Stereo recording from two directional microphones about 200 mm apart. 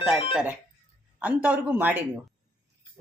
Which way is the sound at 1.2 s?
5° right (ahead or behind).